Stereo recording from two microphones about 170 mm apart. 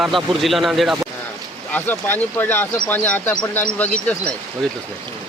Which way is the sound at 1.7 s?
10° left (ahead or behind).